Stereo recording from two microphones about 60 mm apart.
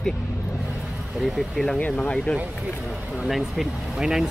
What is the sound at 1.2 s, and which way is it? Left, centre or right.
Speech, centre.